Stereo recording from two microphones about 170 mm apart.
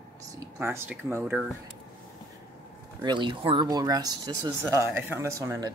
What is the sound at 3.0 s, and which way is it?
Speech, 30° right (ahead or behind).